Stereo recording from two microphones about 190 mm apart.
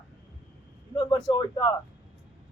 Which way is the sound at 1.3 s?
25° left (ahead or behind).